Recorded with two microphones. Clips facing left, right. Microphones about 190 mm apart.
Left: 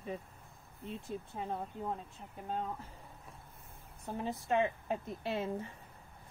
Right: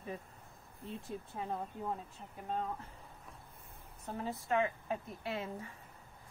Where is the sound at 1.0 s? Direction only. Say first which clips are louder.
Left 1 dB; centre (ahead or behind).